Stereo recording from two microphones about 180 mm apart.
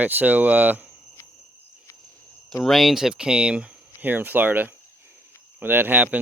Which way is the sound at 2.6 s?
Centre (ahead or behind).